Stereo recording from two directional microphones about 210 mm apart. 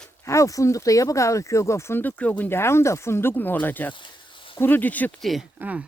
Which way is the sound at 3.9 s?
20° left (ahead or behind).